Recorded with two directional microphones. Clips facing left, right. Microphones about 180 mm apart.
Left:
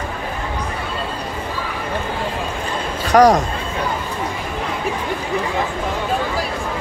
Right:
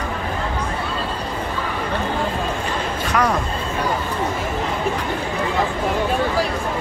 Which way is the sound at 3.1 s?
40° left (ahead or behind).